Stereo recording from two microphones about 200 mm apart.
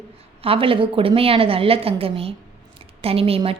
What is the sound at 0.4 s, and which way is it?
A woman's voice, 25° right (ahead or behind).